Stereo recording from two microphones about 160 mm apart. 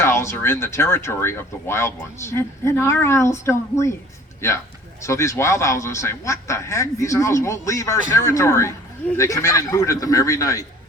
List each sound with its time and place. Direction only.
0.0 s speech: 15° left (ahead or behind)